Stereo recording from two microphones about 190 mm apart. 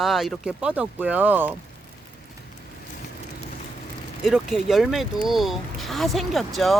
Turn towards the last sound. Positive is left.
turn(degrees=0)  # may be behind; listen again after turning